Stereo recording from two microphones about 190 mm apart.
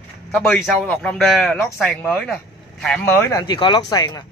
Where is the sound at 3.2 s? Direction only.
15° left (ahead or behind).